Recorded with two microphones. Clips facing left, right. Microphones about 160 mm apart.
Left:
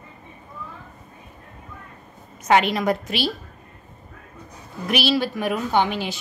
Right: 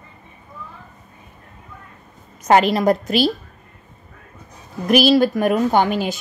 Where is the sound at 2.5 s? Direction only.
40° right (ahead or behind).